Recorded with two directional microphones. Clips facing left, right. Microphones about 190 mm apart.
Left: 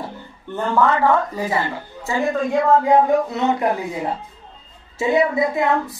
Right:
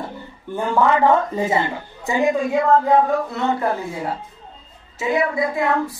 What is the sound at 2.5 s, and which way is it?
A woman's voice, 5° left (ahead or behind).